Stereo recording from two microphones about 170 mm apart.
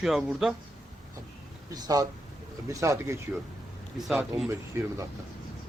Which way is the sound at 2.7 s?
15° right (ahead or behind).